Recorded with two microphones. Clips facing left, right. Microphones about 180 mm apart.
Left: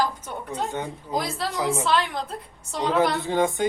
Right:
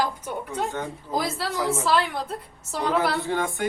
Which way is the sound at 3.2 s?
20° left (ahead or behind).